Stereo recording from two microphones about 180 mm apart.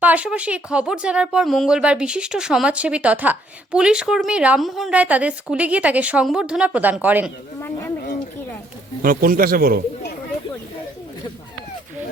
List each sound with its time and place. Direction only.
0.0 s speech: 10° right (ahead or behind)
7.6 s a sound: 10° left (ahead or behind)
9.0 s a man's voice: 50° right (ahead or behind)